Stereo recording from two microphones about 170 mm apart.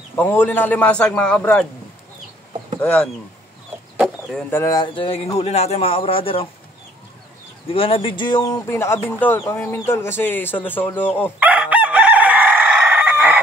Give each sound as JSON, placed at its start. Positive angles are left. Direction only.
{"t": 0.1, "sound": "speech", "side_deg": 10}
{"t": 2.8, "sound": "speech", "side_deg": 10}
{"t": 3.9, "sound": "chicken", "side_deg": -5}
{"t": 4.5, "sound": "a man's voice", "side_deg": 15}
{"t": 7.6, "sound": "speech", "side_deg": 35}
{"t": 11.3, "sound": "chicken", "side_deg": -10}